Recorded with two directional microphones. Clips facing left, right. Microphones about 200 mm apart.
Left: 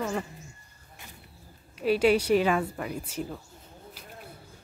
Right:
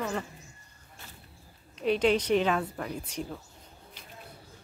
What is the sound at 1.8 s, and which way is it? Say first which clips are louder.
A woman's voice: left 2 dB; 5° left (ahead or behind).